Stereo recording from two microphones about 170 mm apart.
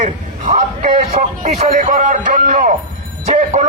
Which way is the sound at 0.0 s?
45° right (ahead or behind).